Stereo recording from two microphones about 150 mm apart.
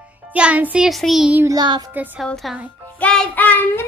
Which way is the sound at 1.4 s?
30° right (ahead or behind).